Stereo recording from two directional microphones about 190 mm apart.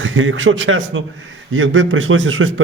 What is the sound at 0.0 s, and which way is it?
A man's voice, 90° right.